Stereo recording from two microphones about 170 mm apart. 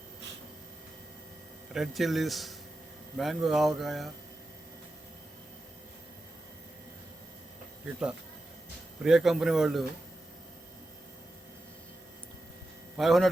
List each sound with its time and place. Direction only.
1.7 s speech: centre (ahead or behind)
9.0 s speech: 5° right (ahead or behind)
13.0 s speech: centre (ahead or behind)